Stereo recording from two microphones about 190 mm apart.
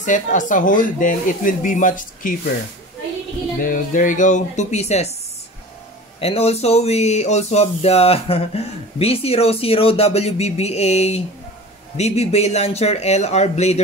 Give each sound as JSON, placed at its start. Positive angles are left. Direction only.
{"t": 0.0, "sound": "speech", "side_deg": 40}
{"t": 3.6, "sound": "speech", "side_deg": 45}
{"t": 6.2, "sound": "speech", "side_deg": 30}